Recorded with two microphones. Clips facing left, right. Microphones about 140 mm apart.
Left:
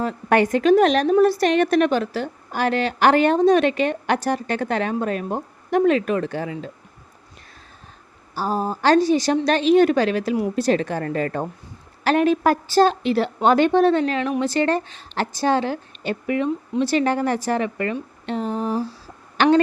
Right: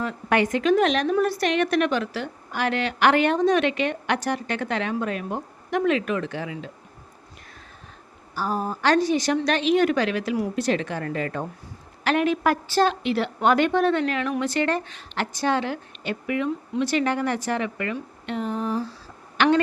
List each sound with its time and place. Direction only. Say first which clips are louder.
0.0 s a woman's voice: left 4 dB; 40° left (ahead or behind)
8.4 s a woman's voice: left 3 dB; 30° left (ahead or behind)